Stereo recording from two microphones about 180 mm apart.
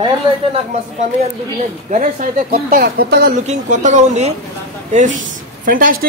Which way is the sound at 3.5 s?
40° right (ahead or behind).